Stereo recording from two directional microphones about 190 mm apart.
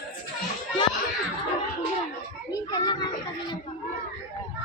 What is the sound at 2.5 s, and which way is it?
Children playing, 20° left (ahead or behind).